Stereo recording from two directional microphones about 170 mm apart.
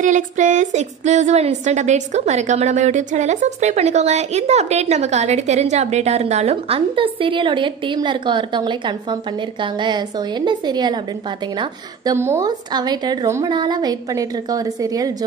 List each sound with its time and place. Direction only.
0.0 s a woman's voice: 45° right (ahead or behind); by 15.1 s 20° right (ahead or behind)